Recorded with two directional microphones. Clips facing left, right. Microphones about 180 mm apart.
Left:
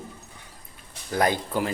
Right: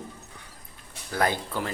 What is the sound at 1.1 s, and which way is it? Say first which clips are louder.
Speech: left 3 dB; 15° left (ahead or behind).